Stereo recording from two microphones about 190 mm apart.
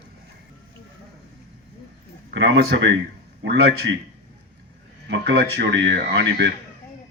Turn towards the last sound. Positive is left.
turn(degrees=-70)  # may be behind; listen again after turning